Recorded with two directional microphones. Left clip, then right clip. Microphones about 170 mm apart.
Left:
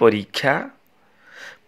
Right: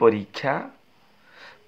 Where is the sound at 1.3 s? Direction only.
35° left (ahead or behind).